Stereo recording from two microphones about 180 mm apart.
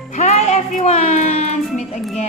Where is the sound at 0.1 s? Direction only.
40° left (ahead or behind).